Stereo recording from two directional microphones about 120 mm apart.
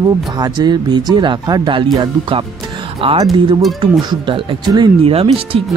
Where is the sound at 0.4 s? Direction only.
35° right (ahead or behind).